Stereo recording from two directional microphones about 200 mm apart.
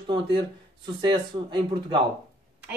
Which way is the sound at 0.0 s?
25° right (ahead or behind).